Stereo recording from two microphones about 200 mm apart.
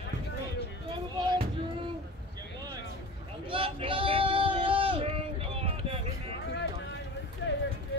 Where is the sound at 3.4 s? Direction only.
25° right (ahead or behind).